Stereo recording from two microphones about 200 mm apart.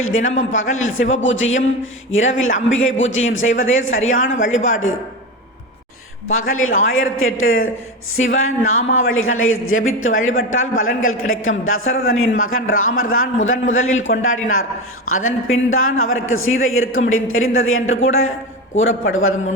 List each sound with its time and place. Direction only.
0.3 s a man's voice: 75° left (ahead or behind)
6.5 s a woman's voice: 90° left